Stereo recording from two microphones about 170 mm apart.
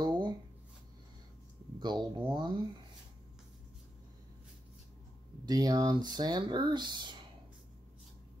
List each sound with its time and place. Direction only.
0.0 s shuffling cards: 25° right (ahead or behind)
1.8 s speech: 25° right (ahead or behind)
5.4 s speech: 20° right (ahead or behind)